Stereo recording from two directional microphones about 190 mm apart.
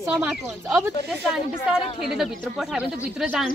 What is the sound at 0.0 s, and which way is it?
A woman's voice, 5° right (ahead or behind).